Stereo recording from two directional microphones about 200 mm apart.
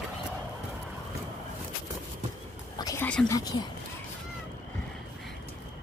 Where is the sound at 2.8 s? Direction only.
15° left (ahead or behind).